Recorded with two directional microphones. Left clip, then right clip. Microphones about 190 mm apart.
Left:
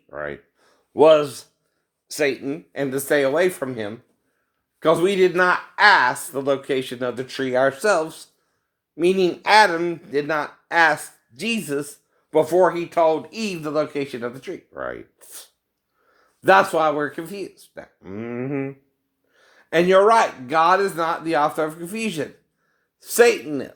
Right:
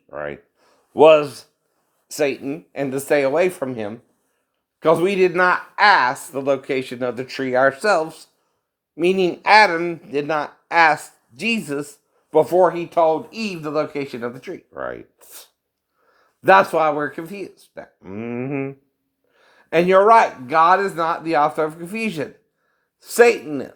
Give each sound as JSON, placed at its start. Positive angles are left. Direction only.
{"t": 0.1, "sound": "speech", "side_deg": -15}